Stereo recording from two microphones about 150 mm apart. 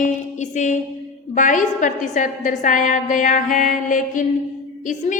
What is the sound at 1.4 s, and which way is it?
A woman's voice, 60° left (ahead or behind).